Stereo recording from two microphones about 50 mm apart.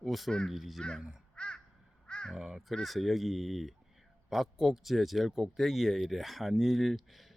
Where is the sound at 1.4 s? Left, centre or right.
Left.